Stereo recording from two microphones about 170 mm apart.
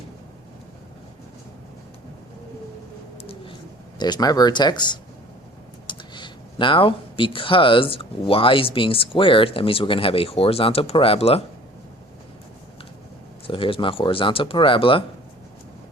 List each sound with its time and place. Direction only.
3.2 s bird: 35° left (ahead or behind)
3.9 s speech: 25° left (ahead or behind)
13.5 s speech: 30° left (ahead or behind)